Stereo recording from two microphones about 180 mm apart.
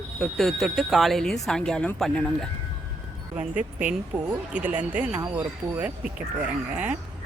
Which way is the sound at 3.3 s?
10° right (ahead or behind).